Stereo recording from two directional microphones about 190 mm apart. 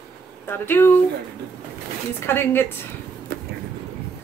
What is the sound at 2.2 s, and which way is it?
Speech, 10° left (ahead or behind).